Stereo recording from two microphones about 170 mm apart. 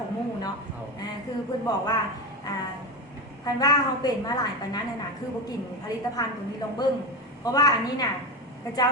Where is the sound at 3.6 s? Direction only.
20° left (ahead or behind).